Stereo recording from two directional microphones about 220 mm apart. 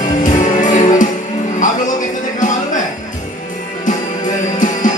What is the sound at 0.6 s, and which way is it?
Music, 35° left (ahead or behind).